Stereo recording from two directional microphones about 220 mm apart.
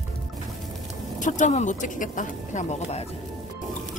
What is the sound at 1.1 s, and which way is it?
Speech, 35° left (ahead or behind).